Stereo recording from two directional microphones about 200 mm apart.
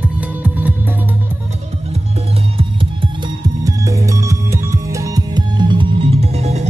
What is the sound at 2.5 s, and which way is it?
Music, 25° right (ahead or behind).